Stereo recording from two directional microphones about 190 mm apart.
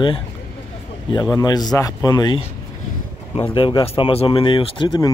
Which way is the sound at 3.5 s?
25° left (ahead or behind).